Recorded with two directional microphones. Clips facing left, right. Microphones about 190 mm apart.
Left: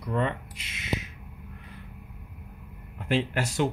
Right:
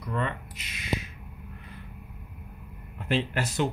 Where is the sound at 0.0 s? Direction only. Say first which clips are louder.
Left 3 dB; 30° left (ahead or behind).